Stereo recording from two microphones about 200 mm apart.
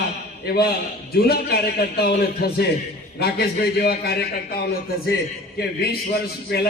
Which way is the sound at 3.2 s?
50° left (ahead or behind).